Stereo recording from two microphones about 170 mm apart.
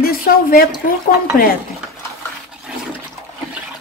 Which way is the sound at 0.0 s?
60° left (ahead or behind).